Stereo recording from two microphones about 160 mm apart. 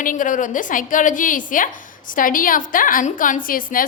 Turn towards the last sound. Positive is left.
turn(degrees=60)  # may be behind; listen again after turning